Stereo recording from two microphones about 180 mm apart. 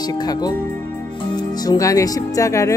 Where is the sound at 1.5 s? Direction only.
20° left (ahead or behind).